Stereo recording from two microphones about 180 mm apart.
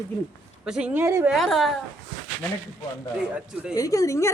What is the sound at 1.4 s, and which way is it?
Speech, centre (ahead or behind).